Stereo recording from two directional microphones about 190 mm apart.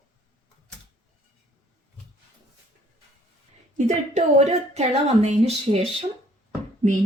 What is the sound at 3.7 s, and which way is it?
A woman's voice, 40° right (ahead or behind).